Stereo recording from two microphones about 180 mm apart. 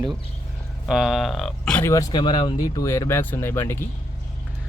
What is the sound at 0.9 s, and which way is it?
Speech, 5° right (ahead or behind).